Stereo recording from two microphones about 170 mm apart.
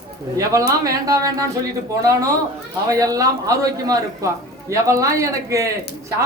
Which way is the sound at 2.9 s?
20° right (ahead or behind).